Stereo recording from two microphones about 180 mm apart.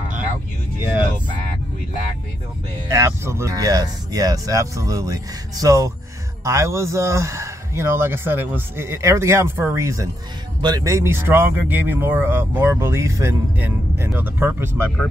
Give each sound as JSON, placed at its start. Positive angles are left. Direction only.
{"t": 2.9, "sound": "speech", "side_deg": -15}